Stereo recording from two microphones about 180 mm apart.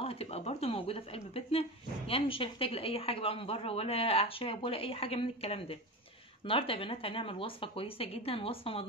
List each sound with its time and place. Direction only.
0.0 s a woman's voice: 35° left (ahead or behind)